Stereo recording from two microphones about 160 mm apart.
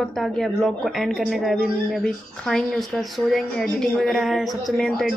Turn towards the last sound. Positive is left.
turn(degrees=0)  # may be behind; listen again after turning